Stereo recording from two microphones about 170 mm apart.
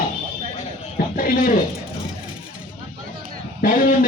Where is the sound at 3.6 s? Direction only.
55° left (ahead or behind).